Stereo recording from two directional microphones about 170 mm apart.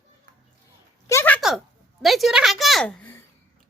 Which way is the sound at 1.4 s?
Centre (ahead or behind).